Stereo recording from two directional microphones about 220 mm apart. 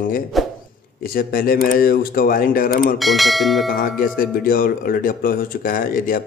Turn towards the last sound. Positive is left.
turn(degrees=40)  # may be behind; listen again after turning